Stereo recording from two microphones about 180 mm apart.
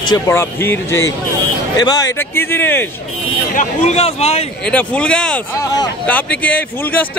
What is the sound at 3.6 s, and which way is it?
Speech, 40° left (ahead or behind).